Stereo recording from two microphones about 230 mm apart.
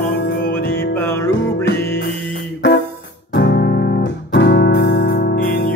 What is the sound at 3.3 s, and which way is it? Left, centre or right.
Music, left.